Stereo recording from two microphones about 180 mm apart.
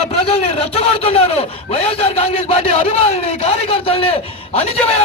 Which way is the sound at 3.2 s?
35° left (ahead or behind).